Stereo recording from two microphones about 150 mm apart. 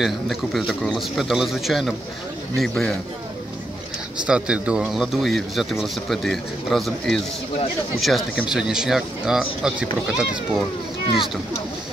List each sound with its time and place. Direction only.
0.0 s speech: centre (ahead or behind)
4.3 s speech: 5° right (ahead or behind)